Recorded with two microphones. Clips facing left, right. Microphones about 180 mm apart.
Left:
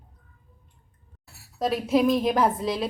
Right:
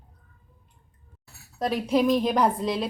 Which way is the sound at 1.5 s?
Centre (ahead or behind).